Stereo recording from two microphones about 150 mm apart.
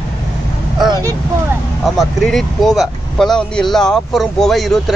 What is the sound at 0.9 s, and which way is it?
Speech, 20° right (ahead or behind).